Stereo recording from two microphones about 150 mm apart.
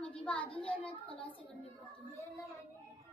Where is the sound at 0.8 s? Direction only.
35° left (ahead or behind).